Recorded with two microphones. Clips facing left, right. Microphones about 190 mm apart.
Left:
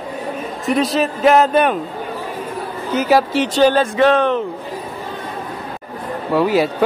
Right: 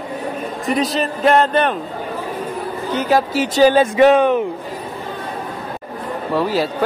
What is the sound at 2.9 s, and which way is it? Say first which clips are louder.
Speech: left 2 dB; 5° left (ahead or behind).